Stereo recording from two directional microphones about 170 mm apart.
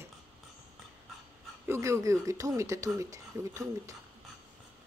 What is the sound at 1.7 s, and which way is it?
Speech, 15° right (ahead or behind).